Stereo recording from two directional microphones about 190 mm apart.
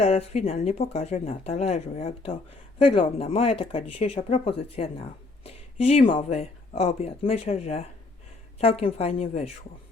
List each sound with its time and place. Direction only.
0.0 s speech: 35° left (ahead or behind)